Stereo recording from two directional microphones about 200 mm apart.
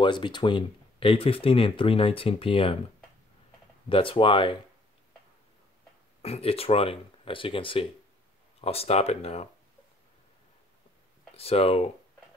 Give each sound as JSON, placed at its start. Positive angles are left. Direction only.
{"t": 0.0, "sound": "speech", "side_deg": 25}
{"t": 3.9, "sound": "speech", "side_deg": 25}
{"t": 6.2, "sound": "speech", "side_deg": 30}
{"t": 11.3, "sound": "speech", "side_deg": 30}